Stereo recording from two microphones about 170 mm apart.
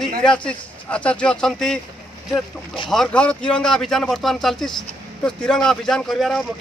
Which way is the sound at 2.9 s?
5° left (ahead or behind).